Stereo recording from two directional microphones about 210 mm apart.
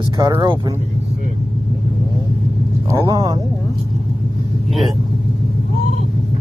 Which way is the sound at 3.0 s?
20° right (ahead or behind).